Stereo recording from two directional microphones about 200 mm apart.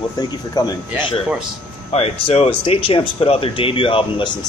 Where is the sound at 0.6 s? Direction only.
20° left (ahead or behind).